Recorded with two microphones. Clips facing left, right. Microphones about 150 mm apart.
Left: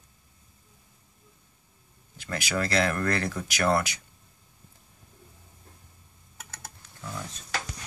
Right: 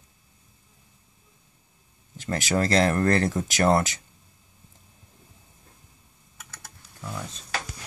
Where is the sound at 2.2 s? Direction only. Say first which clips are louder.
Right 5 dB; 40° right (ahead or behind).